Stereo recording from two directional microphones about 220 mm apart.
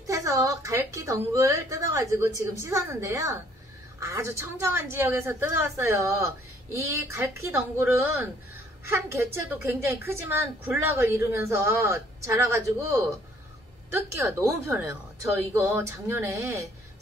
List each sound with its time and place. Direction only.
0.0 s a woman's voice: 15° right (ahead or behind)
15.3 s a woman's voice: 10° right (ahead or behind)